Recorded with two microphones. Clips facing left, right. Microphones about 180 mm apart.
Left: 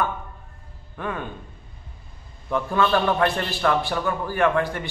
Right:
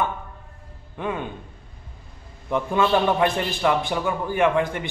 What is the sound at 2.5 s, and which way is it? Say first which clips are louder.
A man's voice: right 1 dB; 15° right (ahead or behind).